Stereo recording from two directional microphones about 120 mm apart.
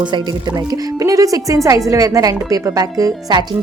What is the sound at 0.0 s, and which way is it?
A woman's voice, 40° right (ahead or behind).